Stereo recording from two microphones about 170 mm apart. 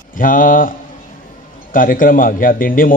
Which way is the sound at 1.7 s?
55° left (ahead or behind).